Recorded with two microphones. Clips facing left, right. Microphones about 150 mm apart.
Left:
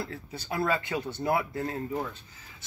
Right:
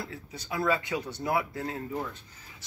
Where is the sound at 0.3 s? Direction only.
30° left (ahead or behind).